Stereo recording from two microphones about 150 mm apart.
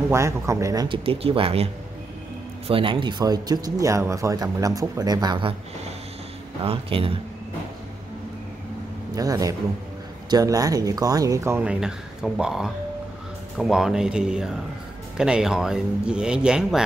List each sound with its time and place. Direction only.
0.1 s speech: 20° right (ahead or behind)
0.8 s speech: 35° right (ahead or behind)
2.7 s speech: 35° right (ahead or behind)
6.6 s speech: 40° right (ahead or behind)
9.1 s speech: 25° right (ahead or behind); by 16.8 s 5° right (ahead or behind)